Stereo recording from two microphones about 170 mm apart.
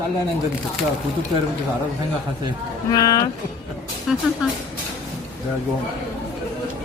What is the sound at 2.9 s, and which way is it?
Speech, 20° left (ahead or behind).